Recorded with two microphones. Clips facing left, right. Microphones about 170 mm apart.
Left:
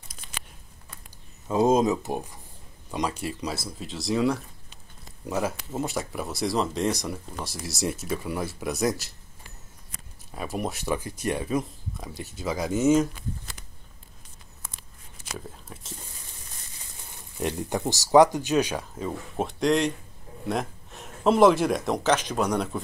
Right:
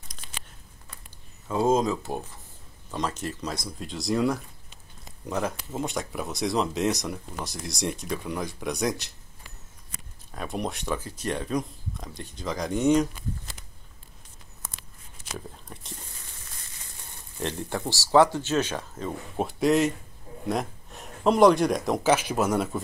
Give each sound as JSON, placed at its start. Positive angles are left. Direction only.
{"t": 1.5, "sound": "speech", "side_deg": 20}
{"t": 10.3, "sound": "speech", "side_deg": 5}
{"t": 15.3, "sound": "whispering", "side_deg": 0}
{"t": 17.4, "sound": "speech", "side_deg": 15}